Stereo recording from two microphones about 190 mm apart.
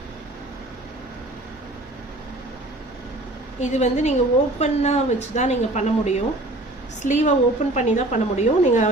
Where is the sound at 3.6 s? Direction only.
40° left (ahead or behind).